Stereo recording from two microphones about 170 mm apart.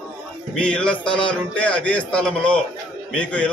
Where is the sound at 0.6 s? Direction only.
5° left (ahead or behind).